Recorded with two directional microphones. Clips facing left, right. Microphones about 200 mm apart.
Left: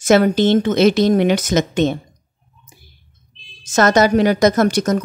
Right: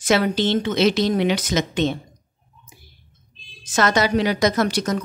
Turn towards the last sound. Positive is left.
turn(degrees=45)  # may be behind; listen again after turning